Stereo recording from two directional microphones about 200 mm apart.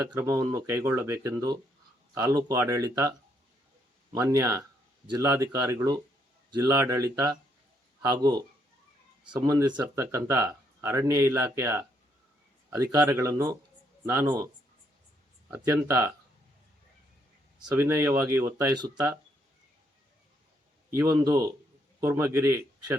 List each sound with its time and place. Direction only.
0.1 s speech: 15° right (ahead or behind)
4.1 s speech: 15° right (ahead or behind)
15.4 s speech: 10° right (ahead or behind)
17.7 s speech: 10° right (ahead or behind)
18.9 s speech: 10° right (ahead or behind)
20.9 s speech: 15° right (ahead or behind)